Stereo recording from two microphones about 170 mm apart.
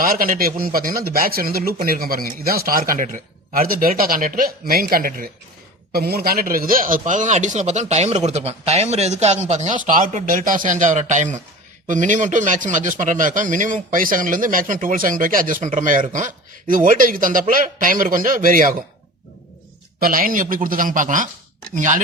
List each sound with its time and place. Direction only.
0.0 s a man's voice: 60° right (ahead or behind)
20.0 s a man's voice: 55° right (ahead or behind)